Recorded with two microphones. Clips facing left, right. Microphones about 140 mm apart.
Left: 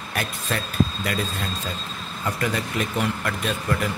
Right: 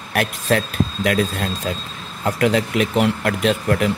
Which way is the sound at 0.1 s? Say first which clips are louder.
Right 9 dB; 65° right (ahead or behind).